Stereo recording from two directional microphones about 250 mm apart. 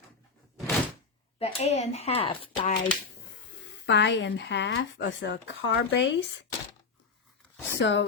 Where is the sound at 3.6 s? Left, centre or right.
Left.